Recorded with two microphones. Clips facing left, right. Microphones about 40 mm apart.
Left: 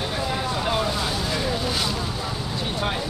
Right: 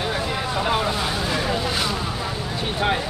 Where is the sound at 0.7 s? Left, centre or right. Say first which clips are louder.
Right 2 dB; centre.